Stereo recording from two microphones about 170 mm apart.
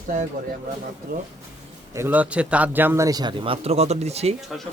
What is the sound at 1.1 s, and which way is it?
Speech, 60° right (ahead or behind).